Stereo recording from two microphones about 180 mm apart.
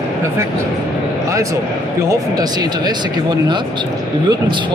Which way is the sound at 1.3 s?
15° right (ahead or behind).